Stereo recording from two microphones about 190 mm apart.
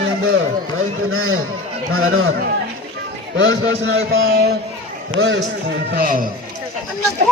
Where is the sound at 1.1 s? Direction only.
90° right.